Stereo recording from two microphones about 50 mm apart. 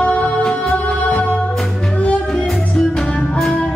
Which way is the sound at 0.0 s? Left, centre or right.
Left.